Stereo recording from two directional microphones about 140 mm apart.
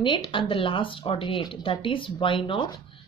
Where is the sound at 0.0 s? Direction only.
35° left (ahead or behind).